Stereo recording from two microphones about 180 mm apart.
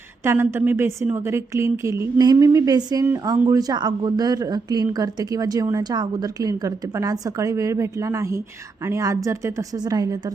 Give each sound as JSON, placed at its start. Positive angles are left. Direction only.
{"t": 0.2, "sound": "a woman's voice", "side_deg": -15}